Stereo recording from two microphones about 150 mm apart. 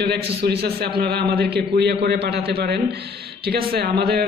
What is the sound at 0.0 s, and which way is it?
A man's voice, 90° right.